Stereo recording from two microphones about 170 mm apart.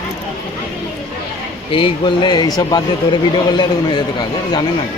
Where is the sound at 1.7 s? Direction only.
30° left (ahead or behind).